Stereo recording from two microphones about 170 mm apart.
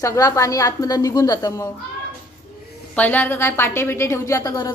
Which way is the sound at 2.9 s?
10° left (ahead or behind).